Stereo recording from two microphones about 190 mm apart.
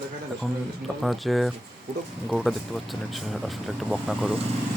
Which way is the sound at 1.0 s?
Centre (ahead or behind).